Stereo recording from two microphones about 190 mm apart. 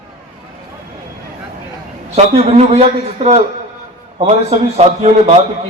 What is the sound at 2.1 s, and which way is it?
A man's voice, 35° right (ahead or behind).